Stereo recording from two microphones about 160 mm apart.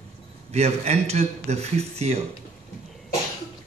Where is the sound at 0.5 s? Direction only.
40° right (ahead or behind).